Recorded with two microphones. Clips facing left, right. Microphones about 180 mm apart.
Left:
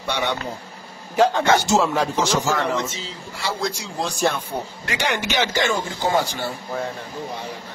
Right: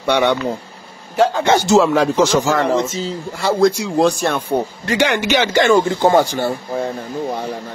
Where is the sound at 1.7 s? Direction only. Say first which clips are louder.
Right 7 dB; 90° right.